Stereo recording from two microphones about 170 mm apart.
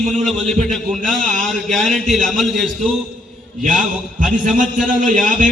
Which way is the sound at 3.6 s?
50° right (ahead or behind).